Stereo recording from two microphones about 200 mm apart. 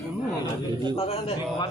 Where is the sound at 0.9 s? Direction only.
30° left (ahead or behind).